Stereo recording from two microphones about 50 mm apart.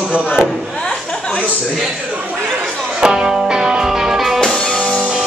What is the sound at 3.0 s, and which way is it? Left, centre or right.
Music, centre.